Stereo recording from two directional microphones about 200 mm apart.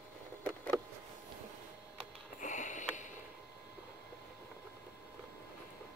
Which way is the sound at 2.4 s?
40° left (ahead or behind).